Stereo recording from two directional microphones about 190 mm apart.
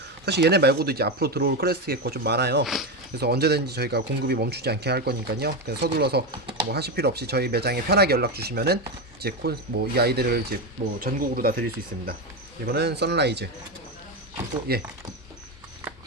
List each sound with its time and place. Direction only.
0.3 s speech: 60° right (ahead or behind)
12.6 s speech: 60° right (ahead or behind)
14.7 s speech: 55° right (ahead or behind)